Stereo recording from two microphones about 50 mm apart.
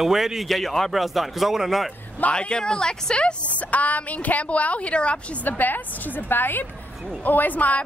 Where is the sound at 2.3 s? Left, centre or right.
Centre.